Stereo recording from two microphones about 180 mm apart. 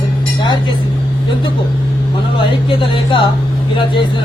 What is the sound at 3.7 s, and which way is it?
Speech, 25° left (ahead or behind).